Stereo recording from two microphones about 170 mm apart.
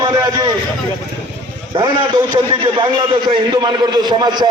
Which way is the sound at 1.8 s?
25° right (ahead or behind).